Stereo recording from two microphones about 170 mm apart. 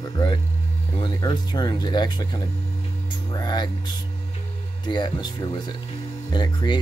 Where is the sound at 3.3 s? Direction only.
25° left (ahead or behind).